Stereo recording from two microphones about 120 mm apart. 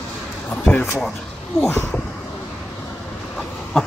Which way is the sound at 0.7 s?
15° left (ahead or behind).